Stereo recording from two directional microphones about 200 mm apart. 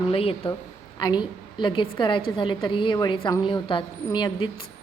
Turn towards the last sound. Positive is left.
turn(degrees=20)  # may be behind; listen again after turning